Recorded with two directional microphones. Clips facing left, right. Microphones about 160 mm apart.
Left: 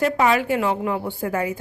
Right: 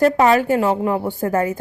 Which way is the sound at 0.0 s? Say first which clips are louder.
Right 5 dB; 40° right (ahead or behind).